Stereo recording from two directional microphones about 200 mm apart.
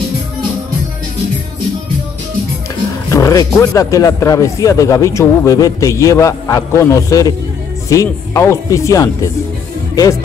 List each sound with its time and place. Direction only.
3.1 s speech: 15° left (ahead or behind)